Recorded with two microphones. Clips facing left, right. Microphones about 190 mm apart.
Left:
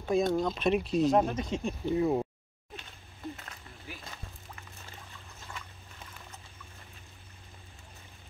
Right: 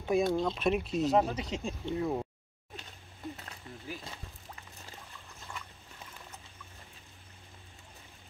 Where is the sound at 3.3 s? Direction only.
30° right (ahead or behind).